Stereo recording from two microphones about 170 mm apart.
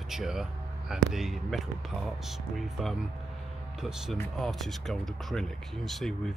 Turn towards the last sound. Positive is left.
turn(degrees=0)  # may be behind; listen again after turning